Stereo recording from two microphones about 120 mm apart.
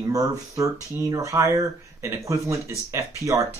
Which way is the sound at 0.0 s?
30° right (ahead or behind).